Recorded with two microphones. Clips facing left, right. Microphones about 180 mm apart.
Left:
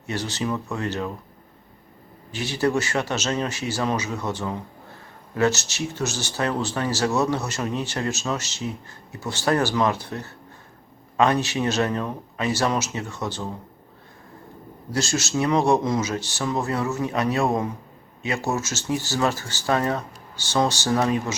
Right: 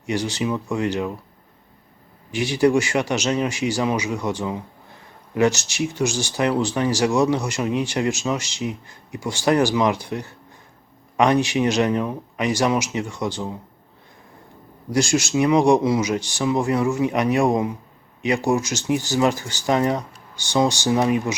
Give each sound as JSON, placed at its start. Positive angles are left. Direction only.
{"t": 0.0, "sound": "speech", "side_deg": -15}
{"t": 2.3, "sound": "speech", "side_deg": -15}
{"t": 14.8, "sound": "speech", "side_deg": -15}